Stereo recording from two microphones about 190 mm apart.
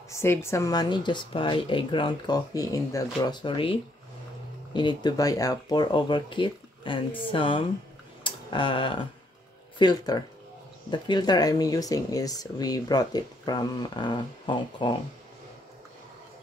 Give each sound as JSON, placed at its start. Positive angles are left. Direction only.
{"t": 0.1, "sound": "speech", "side_deg": 15}
{"t": 8.2, "sound": "a sound", "side_deg": 25}
{"t": 9.8, "sound": "speech", "side_deg": 20}